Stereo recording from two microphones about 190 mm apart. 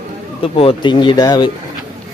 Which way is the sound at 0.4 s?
30° left (ahead or behind).